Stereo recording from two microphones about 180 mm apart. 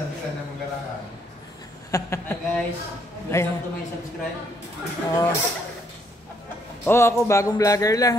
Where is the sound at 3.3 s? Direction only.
15° left (ahead or behind).